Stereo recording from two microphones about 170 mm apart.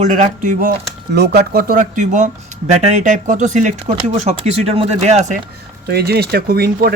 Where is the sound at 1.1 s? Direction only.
70° right (ahead or behind); by 5.4 s 40° right (ahead or behind).